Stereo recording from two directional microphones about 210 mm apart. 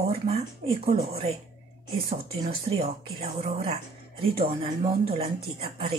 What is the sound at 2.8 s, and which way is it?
Speech, 30° right (ahead or behind).